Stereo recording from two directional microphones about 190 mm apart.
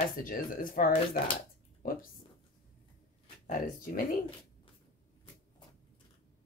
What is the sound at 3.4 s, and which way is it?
Speech, 45° left (ahead or behind).